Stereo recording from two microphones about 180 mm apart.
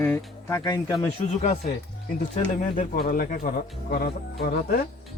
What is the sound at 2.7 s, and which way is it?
Speech, 50° left (ahead or behind).